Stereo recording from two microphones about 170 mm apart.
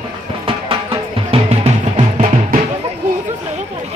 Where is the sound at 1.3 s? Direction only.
35° right (ahead or behind).